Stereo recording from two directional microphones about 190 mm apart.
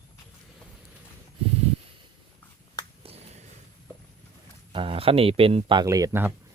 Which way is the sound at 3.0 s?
30° right (ahead or behind).